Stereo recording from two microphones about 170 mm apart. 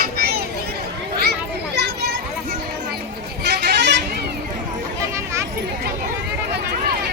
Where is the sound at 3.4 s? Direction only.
80° right.